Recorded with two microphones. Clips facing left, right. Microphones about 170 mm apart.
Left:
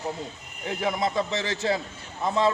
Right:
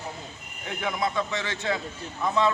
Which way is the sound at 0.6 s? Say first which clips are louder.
Left 2 dB; 35° left (ahead or behind).